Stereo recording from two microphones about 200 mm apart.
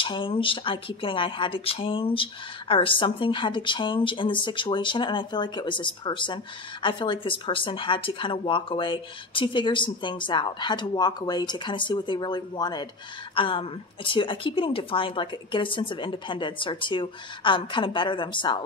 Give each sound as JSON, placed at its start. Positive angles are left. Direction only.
{"t": 0.0, "sound": "a woman's voice", "side_deg": 25}